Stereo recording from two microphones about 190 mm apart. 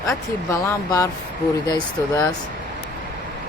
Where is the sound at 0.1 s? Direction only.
15° left (ahead or behind).